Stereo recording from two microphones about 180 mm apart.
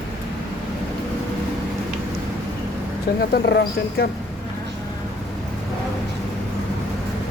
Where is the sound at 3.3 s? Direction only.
65° left (ahead or behind).